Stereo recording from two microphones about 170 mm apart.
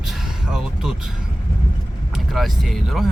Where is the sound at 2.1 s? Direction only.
Centre (ahead or behind).